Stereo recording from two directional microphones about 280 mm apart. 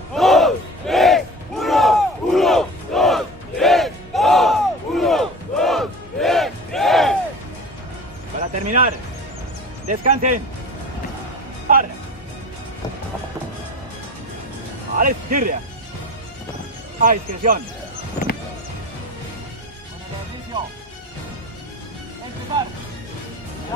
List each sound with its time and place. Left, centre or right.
0.1 s battle cry: centre
8.6 s music: right
15.0 s music: right
17.0 s speech: right
18.2 s music: left